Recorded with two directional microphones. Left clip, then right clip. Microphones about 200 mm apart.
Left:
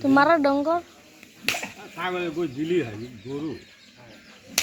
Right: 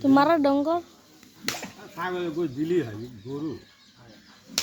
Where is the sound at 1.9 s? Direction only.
15° right (ahead or behind).